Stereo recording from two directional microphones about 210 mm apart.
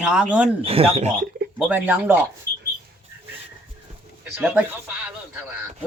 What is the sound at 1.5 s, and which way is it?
Speech, 10° right (ahead or behind).